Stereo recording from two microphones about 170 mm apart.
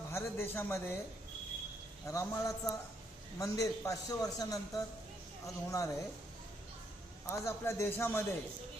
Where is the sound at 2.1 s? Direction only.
20° left (ahead or behind).